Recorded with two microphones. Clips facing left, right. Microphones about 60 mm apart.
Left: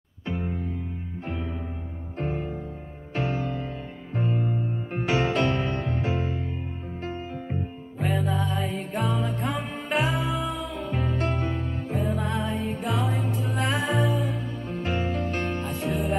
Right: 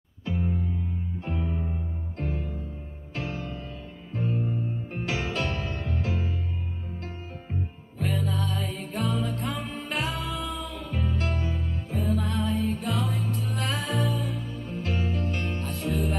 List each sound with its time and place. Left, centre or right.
0.3 s music: left
2.1 s music: left
3.2 s music: left
4.1 s music: left
5.0 s music: left
8.0 s music: centre
11.0 s music: left
11.9 s music: centre
15.0 s music: left
15.7 s music: centre